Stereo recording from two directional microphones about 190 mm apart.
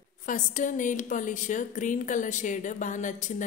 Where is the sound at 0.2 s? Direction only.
40° left (ahead or behind).